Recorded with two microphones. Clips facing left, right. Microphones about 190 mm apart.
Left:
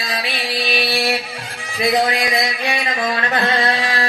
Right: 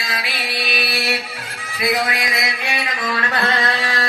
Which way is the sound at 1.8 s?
30° left (ahead or behind).